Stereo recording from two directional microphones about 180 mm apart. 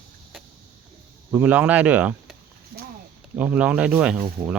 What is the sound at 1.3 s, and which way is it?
Speech, 10° right (ahead or behind).